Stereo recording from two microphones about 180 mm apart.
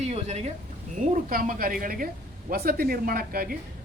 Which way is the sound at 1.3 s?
50° right (ahead or behind).